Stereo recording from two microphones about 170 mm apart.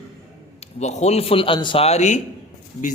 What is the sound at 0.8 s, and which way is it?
A man's voice, 40° left (ahead or behind).